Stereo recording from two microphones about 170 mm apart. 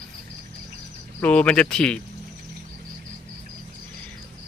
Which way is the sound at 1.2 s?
5° left (ahead or behind).